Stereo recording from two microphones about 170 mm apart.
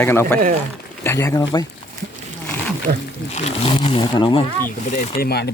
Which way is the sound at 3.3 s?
35° left (ahead or behind).